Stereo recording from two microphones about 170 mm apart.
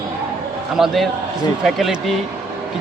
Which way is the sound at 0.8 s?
Centre (ahead or behind).